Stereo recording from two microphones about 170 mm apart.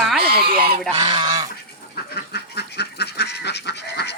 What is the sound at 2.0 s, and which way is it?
Duck, 65° left (ahead or behind).